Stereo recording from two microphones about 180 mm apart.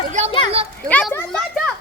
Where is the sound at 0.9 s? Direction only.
5° left (ahead or behind).